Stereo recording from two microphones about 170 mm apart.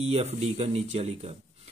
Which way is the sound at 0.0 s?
40° right (ahead or behind).